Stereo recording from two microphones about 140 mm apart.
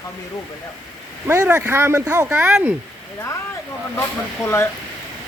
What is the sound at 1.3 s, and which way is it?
Speech, 20° right (ahead or behind).